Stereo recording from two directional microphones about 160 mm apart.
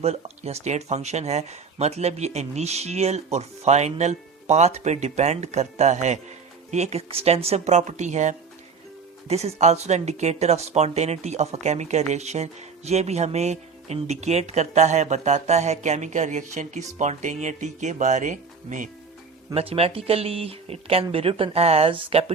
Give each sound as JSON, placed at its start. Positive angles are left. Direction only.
{"t": 0.0, "sound": "speech", "side_deg": -40}
{"t": 19.5, "sound": "speech", "side_deg": -40}